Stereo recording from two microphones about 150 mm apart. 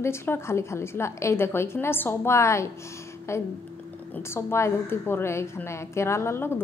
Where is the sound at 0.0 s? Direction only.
15° left (ahead or behind).